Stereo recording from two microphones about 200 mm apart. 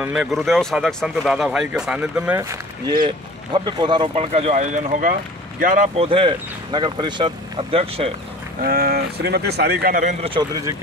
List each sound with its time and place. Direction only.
0.0 s speech: 5° right (ahead or behind); by 5.9 s 40° right (ahead or behind)
5.9 s speech: 25° right (ahead or behind)
8.6 s a man's voice: 50° right (ahead or behind)
10.2 s speech: 20° right (ahead or behind)